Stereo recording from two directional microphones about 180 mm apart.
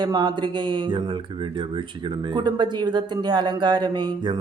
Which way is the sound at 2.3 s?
25° right (ahead or behind).